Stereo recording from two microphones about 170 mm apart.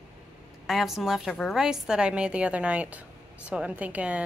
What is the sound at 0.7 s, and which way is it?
A woman's voice, centre (ahead or behind).